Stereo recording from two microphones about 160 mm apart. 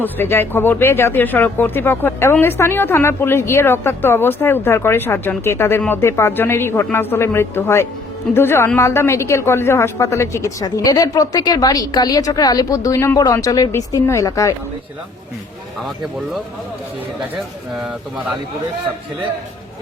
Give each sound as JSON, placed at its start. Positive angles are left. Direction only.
{"t": 0.0, "sound": "a woman's voice", "side_deg": 15}